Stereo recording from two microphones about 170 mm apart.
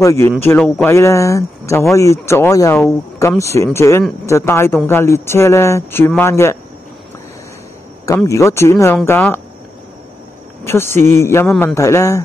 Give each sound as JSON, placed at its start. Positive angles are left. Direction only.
{"t": 0.0, "sound": "speech", "side_deg": 15}
{"t": 0.6, "sound": "speech", "side_deg": 0}
{"t": 0.8, "sound": "speech", "side_deg": 15}
{"t": 8.3, "sound": "speech", "side_deg": 15}
{"t": 10.6, "sound": "speech", "side_deg": 15}